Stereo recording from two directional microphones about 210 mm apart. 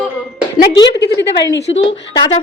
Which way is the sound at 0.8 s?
55° left (ahead or behind).